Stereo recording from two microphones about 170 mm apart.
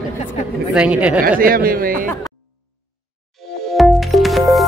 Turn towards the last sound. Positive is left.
turn(degrees=0)  # may be behind; listen again after turning